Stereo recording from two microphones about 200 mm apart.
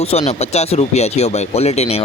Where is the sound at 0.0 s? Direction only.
30° left (ahead or behind).